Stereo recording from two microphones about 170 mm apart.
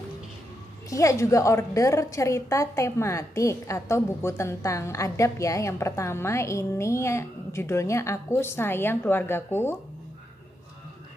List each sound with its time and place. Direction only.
0.8 s a woman's voice: 20° left (ahead or behind)